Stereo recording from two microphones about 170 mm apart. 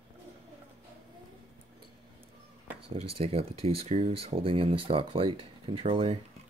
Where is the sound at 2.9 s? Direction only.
35° right (ahead or behind).